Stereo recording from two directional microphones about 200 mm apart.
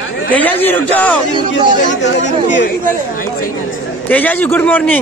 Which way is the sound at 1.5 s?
60° left (ahead or behind).